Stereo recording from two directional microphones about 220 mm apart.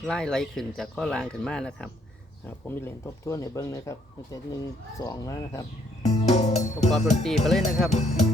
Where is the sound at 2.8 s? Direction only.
15° left (ahead or behind).